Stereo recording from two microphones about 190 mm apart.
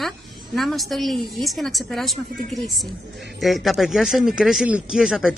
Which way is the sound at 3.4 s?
Centre (ahead or behind).